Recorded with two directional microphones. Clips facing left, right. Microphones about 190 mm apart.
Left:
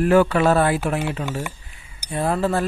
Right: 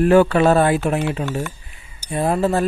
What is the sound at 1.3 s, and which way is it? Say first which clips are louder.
Speech: right 3 dB; 10° left (ahead or behind).